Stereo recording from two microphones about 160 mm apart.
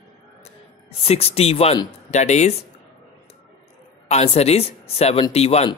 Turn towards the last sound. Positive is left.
turn(degrees=40)  # may be behind; listen again after turning